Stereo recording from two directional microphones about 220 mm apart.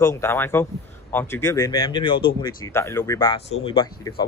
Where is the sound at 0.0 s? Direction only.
10° left (ahead or behind).